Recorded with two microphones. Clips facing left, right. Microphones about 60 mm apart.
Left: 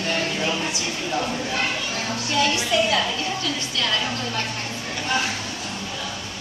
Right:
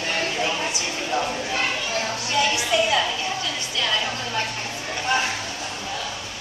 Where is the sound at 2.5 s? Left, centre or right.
Centre.